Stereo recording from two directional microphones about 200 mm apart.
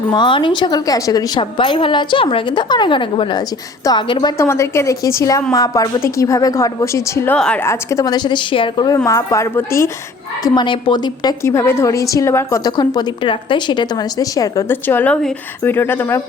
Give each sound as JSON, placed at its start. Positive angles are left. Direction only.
{"t": 0.1, "sound": "a woman's voice", "side_deg": 25}